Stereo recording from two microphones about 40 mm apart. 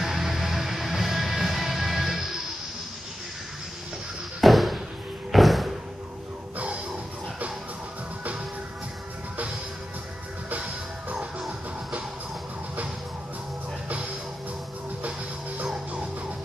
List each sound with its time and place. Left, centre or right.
0.0 s music: centre
4.4 s door: centre
5.3 s thump: centre
10.5 s music: right
15.0 s music: right